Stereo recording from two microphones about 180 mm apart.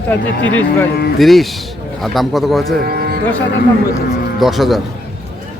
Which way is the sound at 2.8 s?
60° right (ahead or behind).